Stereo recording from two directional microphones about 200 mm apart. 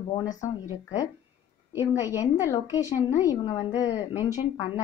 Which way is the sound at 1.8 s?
15° left (ahead or behind).